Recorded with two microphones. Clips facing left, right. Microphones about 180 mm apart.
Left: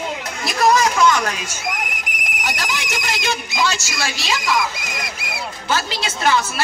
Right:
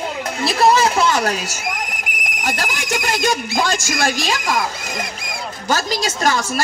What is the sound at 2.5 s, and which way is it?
A woman's voice, 45° right (ahead or behind).